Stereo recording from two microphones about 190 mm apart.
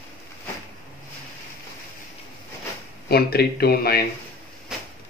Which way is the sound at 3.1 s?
55° left (ahead or behind).